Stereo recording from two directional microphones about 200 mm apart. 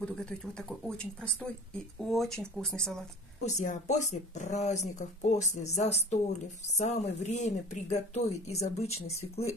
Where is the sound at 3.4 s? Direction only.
35° left (ahead or behind).